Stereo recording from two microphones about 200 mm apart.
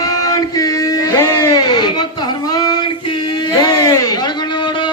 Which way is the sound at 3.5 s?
20° left (ahead or behind).